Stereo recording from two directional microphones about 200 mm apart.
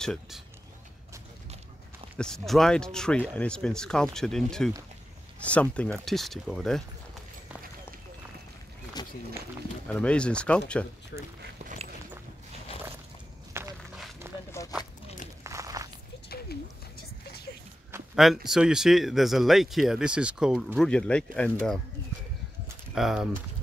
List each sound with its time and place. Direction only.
0.0 s speech: 5° left (ahead or behind)
2.1 s speech: 5° left (ahead or behind)
9.0 s run: 20° left (ahead or behind)
9.8 s speech: 5° left (ahead or behind)
11.1 s speech: 60° left (ahead or behind)
13.5 s walk: 15° right (ahead or behind)
14.2 s a sound: 10° right (ahead or behind)
15.4 s a sound: 15° right (ahead or behind)
18.1 s speech: centre (ahead or behind)
22.9 s speech: centre (ahead or behind)